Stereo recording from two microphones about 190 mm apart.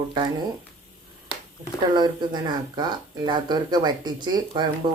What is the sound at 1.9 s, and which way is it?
Speech, 20° right (ahead or behind).